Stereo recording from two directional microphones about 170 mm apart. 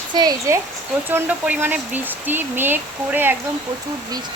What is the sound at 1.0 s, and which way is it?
Speech, 10° right (ahead or behind).